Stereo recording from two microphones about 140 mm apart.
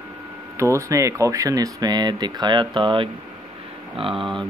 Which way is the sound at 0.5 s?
20° right (ahead or behind).